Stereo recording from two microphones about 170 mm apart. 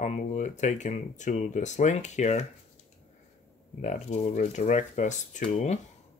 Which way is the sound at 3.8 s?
45° left (ahead or behind).